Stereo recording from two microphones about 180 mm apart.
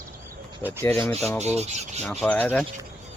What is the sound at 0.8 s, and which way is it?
Speech, 15° left (ahead or behind).